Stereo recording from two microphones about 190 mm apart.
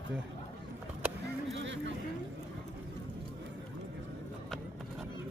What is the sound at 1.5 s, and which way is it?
Vehicle, 70° right (ahead or behind).